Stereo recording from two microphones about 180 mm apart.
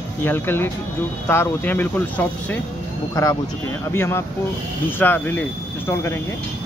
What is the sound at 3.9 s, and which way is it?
Speech, 15° left (ahead or behind).